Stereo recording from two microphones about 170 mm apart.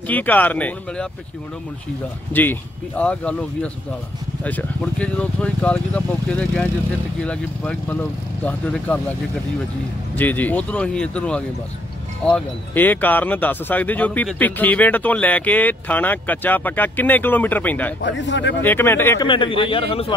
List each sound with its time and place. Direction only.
0.1 s speech: 10° left (ahead or behind)
2.3 s speech: 10° left (ahead or behind)
10.1 s speech: 10° left (ahead or behind)
18.0 s a man's voice: 90° left
18.6 s speech: 10° left (ahead or behind)
19.2 s speech: 30° left (ahead or behind)